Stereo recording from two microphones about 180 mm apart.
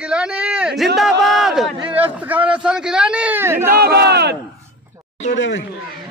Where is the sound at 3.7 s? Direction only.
65° right (ahead or behind).